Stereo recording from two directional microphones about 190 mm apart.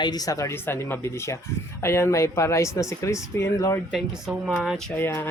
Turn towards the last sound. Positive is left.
turn(degrees=10)  # may be behind; listen again after turning